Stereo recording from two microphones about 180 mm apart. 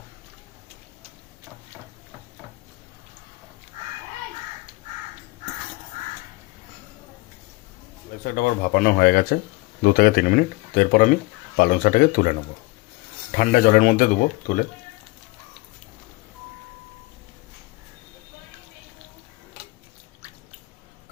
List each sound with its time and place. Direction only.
8.2 s speech: 55° left (ahead or behind)
13.3 s speech: 50° left (ahead or behind)